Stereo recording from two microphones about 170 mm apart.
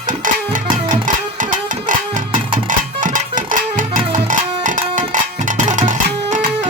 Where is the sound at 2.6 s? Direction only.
50° right (ahead or behind).